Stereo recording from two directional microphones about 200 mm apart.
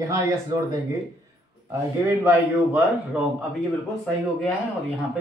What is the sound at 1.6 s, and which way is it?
Speech, 15° right (ahead or behind).